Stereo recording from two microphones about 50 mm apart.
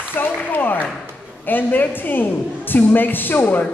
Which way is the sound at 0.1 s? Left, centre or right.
Left.